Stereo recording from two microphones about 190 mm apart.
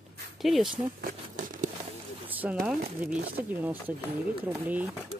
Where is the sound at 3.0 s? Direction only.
10° right (ahead or behind).